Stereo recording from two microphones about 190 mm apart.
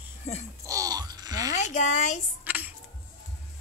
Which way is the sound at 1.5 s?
40° left (ahead or behind).